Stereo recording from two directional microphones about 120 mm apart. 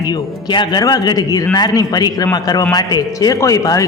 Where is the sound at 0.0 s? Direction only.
35° left (ahead or behind).